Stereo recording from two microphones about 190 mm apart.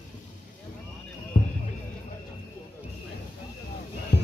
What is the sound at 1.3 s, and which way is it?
Basketball bounce, 40° left (ahead or behind).